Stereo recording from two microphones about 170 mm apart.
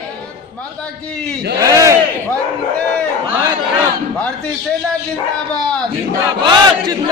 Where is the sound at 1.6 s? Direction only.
20° right (ahead or behind).